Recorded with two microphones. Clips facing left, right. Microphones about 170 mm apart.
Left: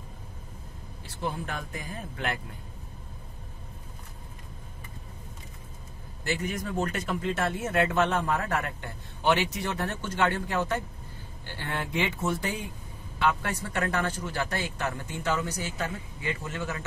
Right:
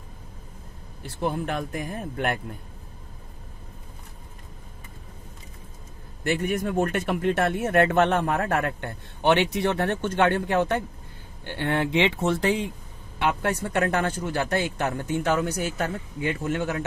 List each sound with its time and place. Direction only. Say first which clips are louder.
1.0 s speech: right 6 dB; 60° right (ahead or behind)
6.2 s speech: right 6 dB; 55° right (ahead or behind); by 12.6 s 80° right
13.3 s speech: right 6 dB; 55° right (ahead or behind)